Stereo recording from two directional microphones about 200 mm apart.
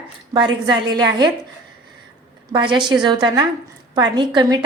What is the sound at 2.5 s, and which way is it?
A woman's voice, 25° right (ahead or behind).